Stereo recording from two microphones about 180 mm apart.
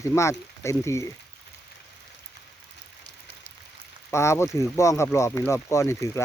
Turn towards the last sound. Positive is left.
turn(degrees=15)  # may be behind; listen again after turning